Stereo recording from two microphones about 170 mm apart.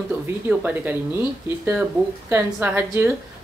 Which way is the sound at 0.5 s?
10° right (ahead or behind).